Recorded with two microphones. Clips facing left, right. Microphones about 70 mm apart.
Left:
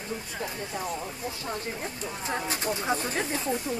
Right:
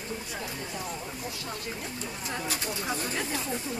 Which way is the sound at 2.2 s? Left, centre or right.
Left.